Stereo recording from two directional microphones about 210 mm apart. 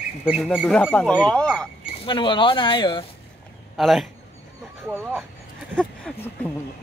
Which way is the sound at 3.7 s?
Centre (ahead or behind).